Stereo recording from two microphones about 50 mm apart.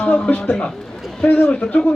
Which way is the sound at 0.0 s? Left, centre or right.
Left.